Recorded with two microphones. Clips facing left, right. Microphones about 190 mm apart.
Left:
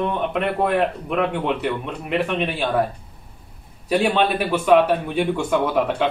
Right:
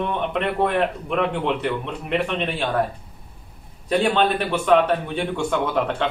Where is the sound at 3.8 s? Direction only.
5° left (ahead or behind).